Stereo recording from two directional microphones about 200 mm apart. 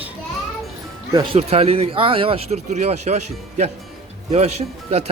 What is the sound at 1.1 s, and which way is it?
A man's voice, 25° right (ahead or behind).